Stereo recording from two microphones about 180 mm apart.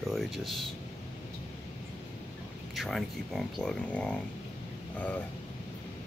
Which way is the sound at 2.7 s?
Centre (ahead or behind).